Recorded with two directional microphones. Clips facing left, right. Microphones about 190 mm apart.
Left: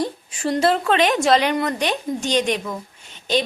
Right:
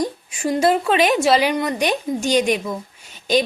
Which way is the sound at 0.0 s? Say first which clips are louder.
Right 1 dB; 10° right (ahead or behind).